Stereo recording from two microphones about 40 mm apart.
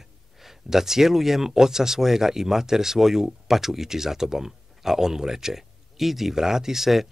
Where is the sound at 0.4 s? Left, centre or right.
Centre.